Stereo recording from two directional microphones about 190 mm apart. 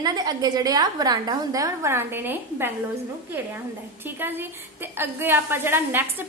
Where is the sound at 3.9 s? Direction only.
10° right (ahead or behind).